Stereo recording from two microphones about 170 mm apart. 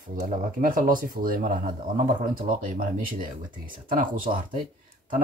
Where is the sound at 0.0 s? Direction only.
50° right (ahead or behind).